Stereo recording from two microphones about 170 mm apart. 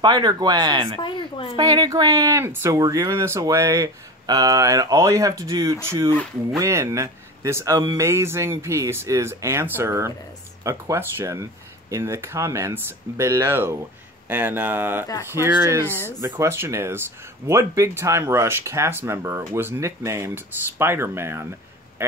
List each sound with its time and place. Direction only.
0.0 s speech: 25° right (ahead or behind)
1.0 s a woman's voice: 30° left (ahead or behind)
1.6 s speech: 20° right (ahead or behind)